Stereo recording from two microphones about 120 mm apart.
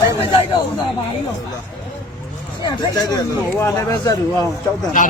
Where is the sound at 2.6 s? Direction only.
30° left (ahead or behind).